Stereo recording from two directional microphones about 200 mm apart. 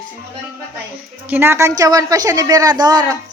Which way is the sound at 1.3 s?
10° right (ahead or behind).